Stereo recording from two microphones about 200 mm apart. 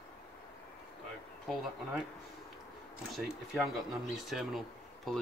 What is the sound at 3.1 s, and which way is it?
Speech, centre (ahead or behind).